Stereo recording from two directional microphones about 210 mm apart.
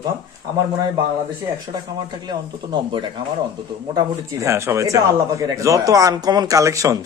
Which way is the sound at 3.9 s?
15° right (ahead or behind).